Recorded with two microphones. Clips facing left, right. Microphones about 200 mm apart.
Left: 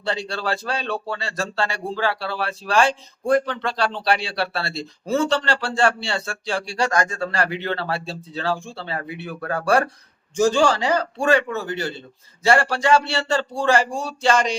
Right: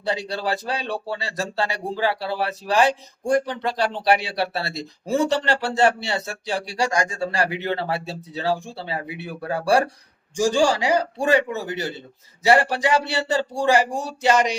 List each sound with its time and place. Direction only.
0.0 s a man's voice: 15° right (ahead or behind)